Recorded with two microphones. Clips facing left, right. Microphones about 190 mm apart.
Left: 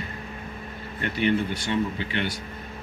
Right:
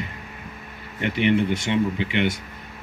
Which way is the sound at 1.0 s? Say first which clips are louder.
Right 4 dB; 20° right (ahead or behind).